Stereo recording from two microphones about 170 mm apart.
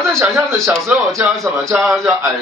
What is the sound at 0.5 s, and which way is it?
Speech, centre (ahead or behind).